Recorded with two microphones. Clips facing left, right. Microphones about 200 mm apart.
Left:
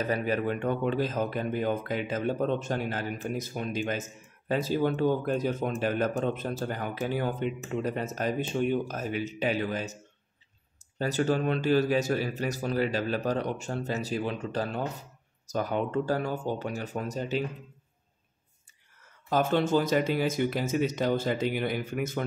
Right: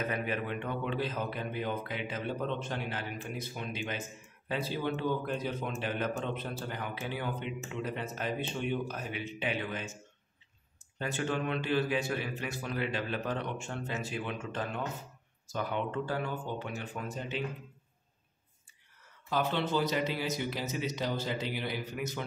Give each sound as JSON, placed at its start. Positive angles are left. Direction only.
{"t": 0.0, "sound": "speech", "side_deg": 40}
{"t": 11.0, "sound": "a man's voice", "side_deg": 40}
{"t": 19.2, "sound": "speech", "side_deg": 45}